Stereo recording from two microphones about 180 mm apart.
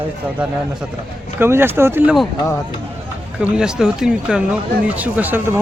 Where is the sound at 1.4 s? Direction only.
10° right (ahead or behind).